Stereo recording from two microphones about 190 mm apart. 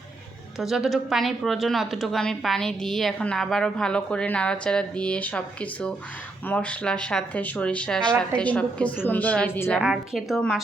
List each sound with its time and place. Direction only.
0.6 s a woman's voice: centre (ahead or behind)
9.8 s a woman's voice: 5° right (ahead or behind)